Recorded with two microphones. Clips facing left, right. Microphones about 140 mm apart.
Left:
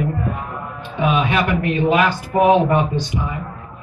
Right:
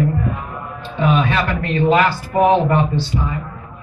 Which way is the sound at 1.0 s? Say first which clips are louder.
Right 1 dB; 15° left (ahead or behind).